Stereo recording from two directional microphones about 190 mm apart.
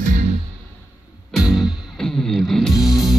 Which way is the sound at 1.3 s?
Centre (ahead or behind).